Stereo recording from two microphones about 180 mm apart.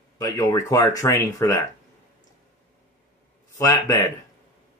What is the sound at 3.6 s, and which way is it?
Speech, 20° left (ahead or behind).